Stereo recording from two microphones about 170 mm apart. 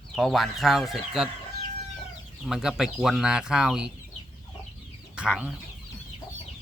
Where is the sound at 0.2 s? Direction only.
Centre (ahead or behind).